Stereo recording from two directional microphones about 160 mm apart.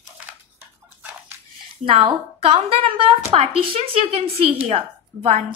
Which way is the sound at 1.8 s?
35° right (ahead or behind).